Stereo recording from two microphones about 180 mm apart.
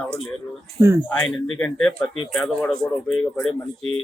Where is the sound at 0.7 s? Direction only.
15° right (ahead or behind).